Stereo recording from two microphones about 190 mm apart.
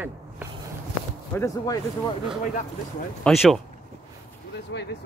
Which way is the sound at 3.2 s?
Centre (ahead or behind).